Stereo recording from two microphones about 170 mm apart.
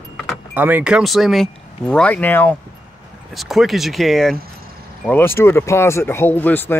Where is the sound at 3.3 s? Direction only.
Centre (ahead or behind).